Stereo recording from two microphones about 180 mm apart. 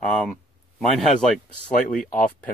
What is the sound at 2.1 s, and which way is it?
Speech, 50° left (ahead or behind).